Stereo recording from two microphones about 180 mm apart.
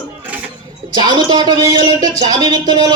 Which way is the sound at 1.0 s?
25° right (ahead or behind).